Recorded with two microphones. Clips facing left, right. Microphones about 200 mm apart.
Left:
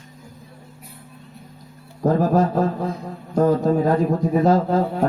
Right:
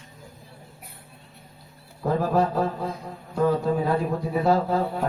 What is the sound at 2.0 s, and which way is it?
A man's voice, 45° left (ahead or behind).